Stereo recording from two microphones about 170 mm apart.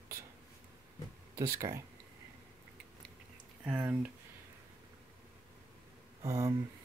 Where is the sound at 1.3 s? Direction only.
15° right (ahead or behind).